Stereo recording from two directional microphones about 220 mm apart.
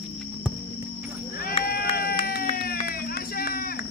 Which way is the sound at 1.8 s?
45° left (ahead or behind).